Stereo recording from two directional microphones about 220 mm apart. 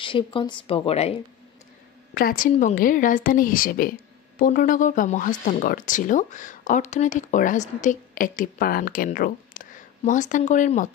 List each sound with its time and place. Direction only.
0.0 s a woman's voice: 20° left (ahead or behind)
2.1 s speech: 40° left (ahead or behind)